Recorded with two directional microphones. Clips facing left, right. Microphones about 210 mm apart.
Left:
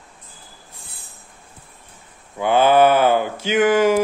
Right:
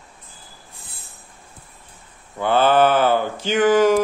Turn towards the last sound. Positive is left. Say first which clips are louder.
# even
turn(degrees=10)  # may be behind; listen again after turning